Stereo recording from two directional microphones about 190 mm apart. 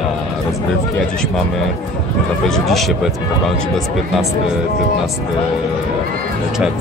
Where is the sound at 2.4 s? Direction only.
Centre (ahead or behind).